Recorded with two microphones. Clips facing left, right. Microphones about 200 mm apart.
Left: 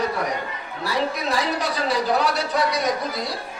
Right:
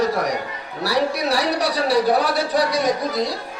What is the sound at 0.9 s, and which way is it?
Speech, 75° right (ahead or behind).